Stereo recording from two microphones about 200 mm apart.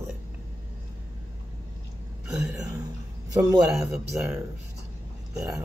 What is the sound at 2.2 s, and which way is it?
Speech, 5° right (ahead or behind).